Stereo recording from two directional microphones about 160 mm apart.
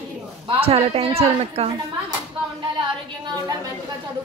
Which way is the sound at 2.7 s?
30° right (ahead or behind).